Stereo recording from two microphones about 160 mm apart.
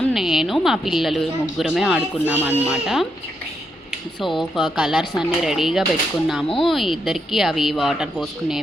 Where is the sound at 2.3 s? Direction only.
15° left (ahead or behind).